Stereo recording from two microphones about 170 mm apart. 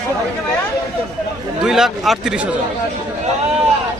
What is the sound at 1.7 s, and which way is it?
Speech, centre (ahead or behind).